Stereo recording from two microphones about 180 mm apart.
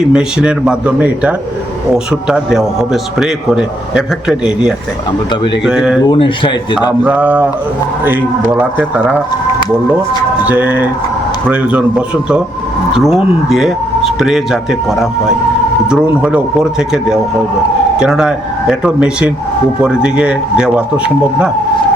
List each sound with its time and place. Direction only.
0.1 s a man's voice: 5° right (ahead or behind)
6.1 s speech: 25° left (ahead or behind)
7.0 s a man's voice: 10° right (ahead or behind)
10.4 s a man's voice: 10° right (ahead or behind)